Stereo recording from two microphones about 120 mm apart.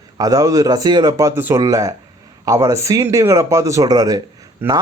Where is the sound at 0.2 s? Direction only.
30° right (ahead or behind).